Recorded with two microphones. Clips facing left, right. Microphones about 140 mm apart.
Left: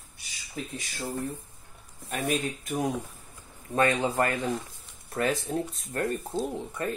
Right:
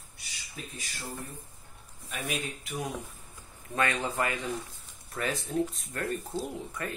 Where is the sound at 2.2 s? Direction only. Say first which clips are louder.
Left 6 dB; 45° left (ahead or behind).